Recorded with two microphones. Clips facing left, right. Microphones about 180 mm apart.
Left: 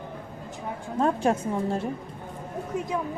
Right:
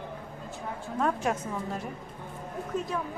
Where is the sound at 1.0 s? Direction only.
30° left (ahead or behind).